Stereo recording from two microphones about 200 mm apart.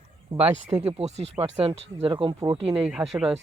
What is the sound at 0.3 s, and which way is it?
Speech, 30° right (ahead or behind).